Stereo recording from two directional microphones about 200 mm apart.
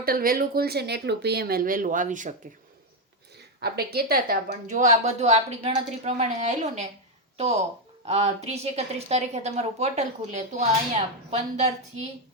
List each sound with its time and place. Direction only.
0.0 s speech: 45° right (ahead or behind)
3.6 s a woman's voice: 50° right (ahead or behind); by 6.8 s 35° right (ahead or behind)
8.0 s a woman's voice: 30° right (ahead or behind)